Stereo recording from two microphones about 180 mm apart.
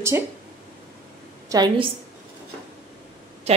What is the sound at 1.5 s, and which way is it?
Speech, 20° right (ahead or behind).